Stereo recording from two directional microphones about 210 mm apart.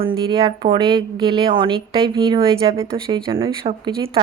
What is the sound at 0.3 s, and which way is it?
A woman's voice, 20° right (ahead or behind).